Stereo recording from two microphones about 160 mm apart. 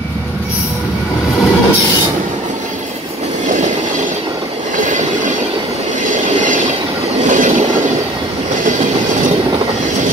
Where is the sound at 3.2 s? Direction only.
50° right (ahead or behind).